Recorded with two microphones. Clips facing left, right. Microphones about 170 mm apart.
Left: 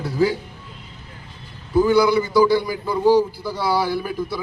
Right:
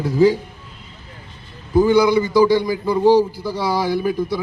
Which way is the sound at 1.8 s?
15° right (ahead or behind).